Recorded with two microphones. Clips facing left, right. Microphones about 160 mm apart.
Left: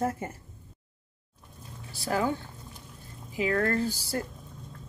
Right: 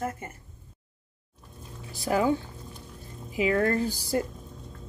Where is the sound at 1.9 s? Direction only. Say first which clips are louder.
Right 3 dB; 15° right (ahead or behind).